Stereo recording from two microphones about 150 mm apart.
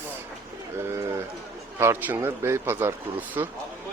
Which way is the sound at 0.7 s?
15° right (ahead or behind).